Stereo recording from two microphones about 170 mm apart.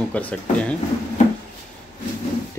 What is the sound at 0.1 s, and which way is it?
Speech, 5° left (ahead or behind).